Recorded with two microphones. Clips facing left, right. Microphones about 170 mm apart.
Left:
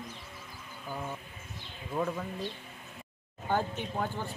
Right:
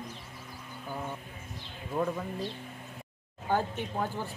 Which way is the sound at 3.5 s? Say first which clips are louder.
Right 1 dB; 5° right (ahead or behind).